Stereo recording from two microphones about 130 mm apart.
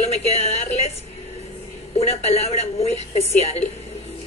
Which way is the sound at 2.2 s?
55° left (ahead or behind).